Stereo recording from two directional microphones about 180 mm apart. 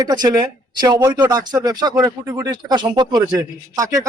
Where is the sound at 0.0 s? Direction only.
20° right (ahead or behind).